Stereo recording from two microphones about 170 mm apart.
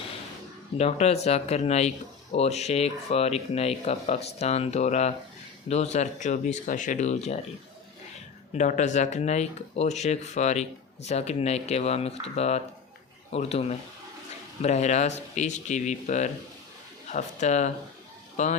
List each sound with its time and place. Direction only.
0.8 s speech: 40° left (ahead or behind)
8.5 s speech: 45° left (ahead or behind)